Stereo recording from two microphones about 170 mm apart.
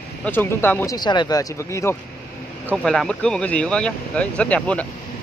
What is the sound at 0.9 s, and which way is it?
Speech, 25° left (ahead or behind).